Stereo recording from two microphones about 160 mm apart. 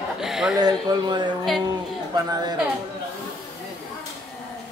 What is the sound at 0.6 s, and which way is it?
Speech, 25° right (ahead or behind).